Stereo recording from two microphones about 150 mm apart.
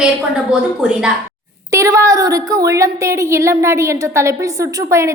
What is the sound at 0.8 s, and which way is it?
Speech, 5° right (ahead or behind).